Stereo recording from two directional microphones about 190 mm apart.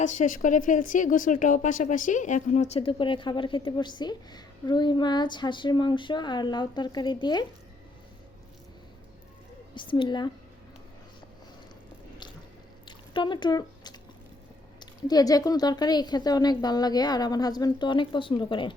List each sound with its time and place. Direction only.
0.0 s a woman's voice: 40° left (ahead or behind); by 7.4 s 20° left (ahead or behind)
9.7 s a woman's voice: 25° left (ahead or behind)
13.1 s a woman's voice: 25° left (ahead or behind)